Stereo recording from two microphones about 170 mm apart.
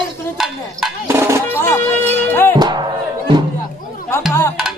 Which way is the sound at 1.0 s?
15° right (ahead or behind).